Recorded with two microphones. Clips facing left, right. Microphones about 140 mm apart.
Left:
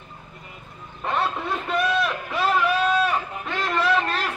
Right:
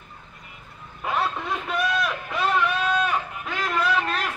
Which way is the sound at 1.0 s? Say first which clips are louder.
Left 1 dB; centre (ahead or behind).